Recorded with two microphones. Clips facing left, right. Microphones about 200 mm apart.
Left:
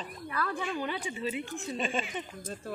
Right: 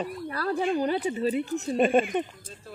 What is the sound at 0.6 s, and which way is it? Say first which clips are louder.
Speech: right 9 dB; 45° right (ahead or behind).